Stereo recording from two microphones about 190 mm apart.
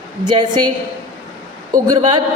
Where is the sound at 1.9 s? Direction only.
25° right (ahead or behind).